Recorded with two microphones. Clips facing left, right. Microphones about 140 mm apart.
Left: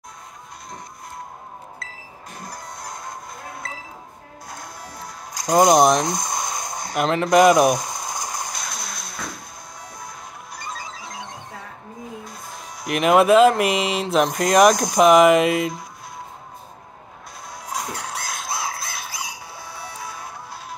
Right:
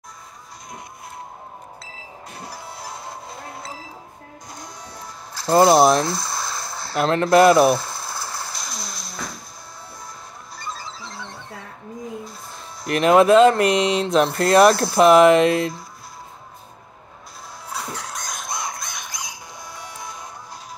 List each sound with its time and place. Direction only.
2.3 s printer: 10° right (ahead or behind)
4.8 s music: 15° left (ahead or behind)
5.8 s speech: 5° right (ahead or behind)
6.0 s a sound: 20° left (ahead or behind)
7.1 s speech: centre (ahead or behind)
7.4 s mechanisms: 15° left (ahead or behind)
11.1 s music: 15° left (ahead or behind)
12.8 s speech: 5° left (ahead or behind)
17.6 s a sound: 10° left (ahead or behind)